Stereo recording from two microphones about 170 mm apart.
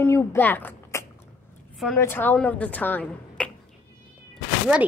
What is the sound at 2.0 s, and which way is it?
A woman's voice, 15° left (ahead or behind).